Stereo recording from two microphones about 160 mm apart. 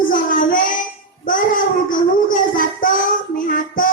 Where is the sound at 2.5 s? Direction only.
60° left (ahead or behind).